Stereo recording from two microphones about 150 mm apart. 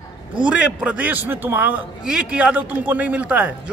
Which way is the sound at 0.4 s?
10° right (ahead or behind).